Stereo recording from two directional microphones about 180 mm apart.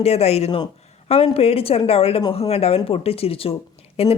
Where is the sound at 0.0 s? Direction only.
35° left (ahead or behind).